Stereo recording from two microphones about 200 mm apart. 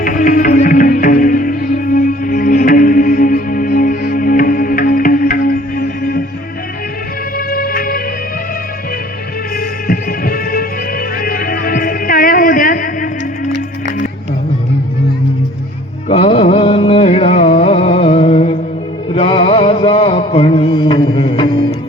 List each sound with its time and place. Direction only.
0.0 s music: 40° left (ahead or behind)
7.3 s music: 45° left (ahead or behind)
9.6 s music: 45° left (ahead or behind)
16.0 s music: 30° left (ahead or behind)